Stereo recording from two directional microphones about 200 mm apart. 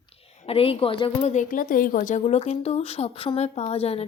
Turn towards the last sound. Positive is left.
turn(degrees=30)  # may be behind; listen again after turning